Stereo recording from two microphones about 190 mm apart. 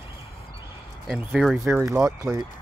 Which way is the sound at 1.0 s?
Centre (ahead or behind).